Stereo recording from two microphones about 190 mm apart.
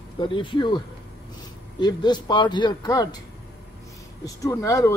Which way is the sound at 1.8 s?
25° left (ahead or behind).